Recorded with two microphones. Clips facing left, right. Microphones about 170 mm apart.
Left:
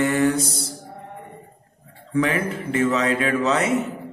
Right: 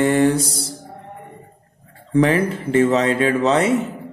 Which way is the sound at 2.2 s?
35° right (ahead or behind).